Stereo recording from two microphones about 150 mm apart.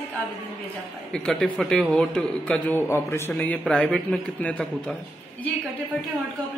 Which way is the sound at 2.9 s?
15° left (ahead or behind).